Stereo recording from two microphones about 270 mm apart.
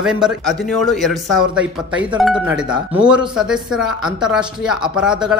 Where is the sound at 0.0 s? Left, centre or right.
Centre.